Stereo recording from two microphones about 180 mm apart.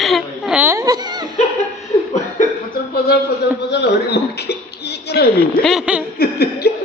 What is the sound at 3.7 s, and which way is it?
Speech, 70° left (ahead or behind).